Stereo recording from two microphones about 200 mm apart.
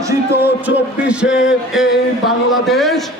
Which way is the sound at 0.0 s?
10° right (ahead or behind).